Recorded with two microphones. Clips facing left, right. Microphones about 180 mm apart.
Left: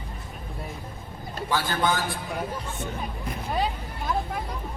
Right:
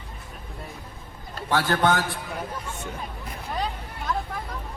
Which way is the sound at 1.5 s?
70° right (ahead or behind).